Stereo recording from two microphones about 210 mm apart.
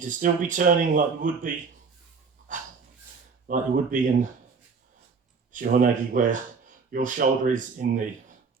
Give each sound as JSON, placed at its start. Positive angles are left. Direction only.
{"t": 0.0, "sound": "speech", "side_deg": -40}
{"t": 2.5, "sound": "dog", "side_deg": -40}
{"t": 3.4, "sound": "speech", "side_deg": -40}
{"t": 5.5, "sound": "speech", "side_deg": -40}